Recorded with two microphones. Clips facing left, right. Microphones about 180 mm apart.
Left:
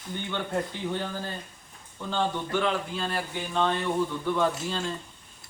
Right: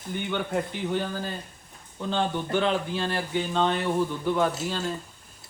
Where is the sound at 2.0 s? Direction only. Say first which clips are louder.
Right 2 dB; 25° right (ahead or behind).